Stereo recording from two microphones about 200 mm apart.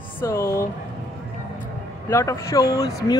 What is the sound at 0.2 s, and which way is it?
Speech, 15° left (ahead or behind).